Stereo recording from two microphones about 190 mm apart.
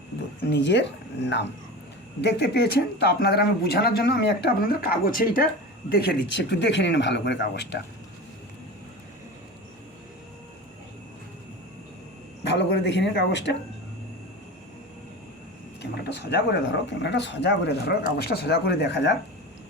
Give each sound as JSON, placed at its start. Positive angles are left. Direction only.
{"t": 0.4, "sound": "speech", "side_deg": 65}
{"t": 12.5, "sound": "speech", "side_deg": 65}
{"t": 15.8, "sound": "speech", "side_deg": 65}